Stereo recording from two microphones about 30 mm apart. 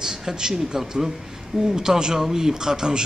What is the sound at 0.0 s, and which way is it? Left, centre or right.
A man's voice, centre.